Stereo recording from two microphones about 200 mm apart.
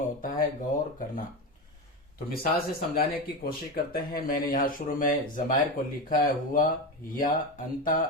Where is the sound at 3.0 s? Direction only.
50° left (ahead or behind).